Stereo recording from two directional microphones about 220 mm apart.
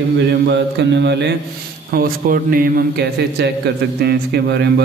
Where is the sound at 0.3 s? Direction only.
50° right (ahead or behind).